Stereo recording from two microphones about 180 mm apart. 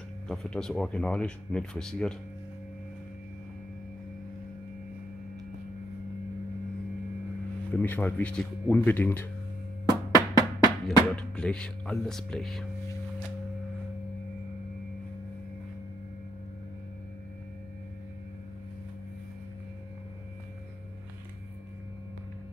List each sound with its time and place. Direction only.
0.3 s speech: 5° left (ahead or behind)
7.7 s speech: 10° left (ahead or behind)
9.8 s drum: 20° right (ahead or behind)
11.1 s speech: 5° left (ahead or behind)